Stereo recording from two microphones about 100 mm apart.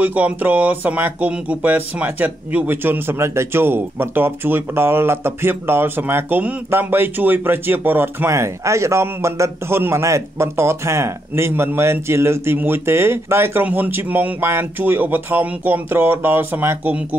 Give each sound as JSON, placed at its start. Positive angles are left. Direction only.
{"t": 0.0, "sound": "speech", "side_deg": -15}